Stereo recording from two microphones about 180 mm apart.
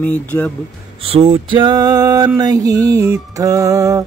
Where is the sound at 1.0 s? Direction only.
35° right (ahead or behind).